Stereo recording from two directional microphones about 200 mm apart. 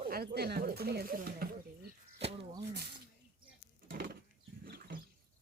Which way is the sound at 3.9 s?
50° right (ahead or behind).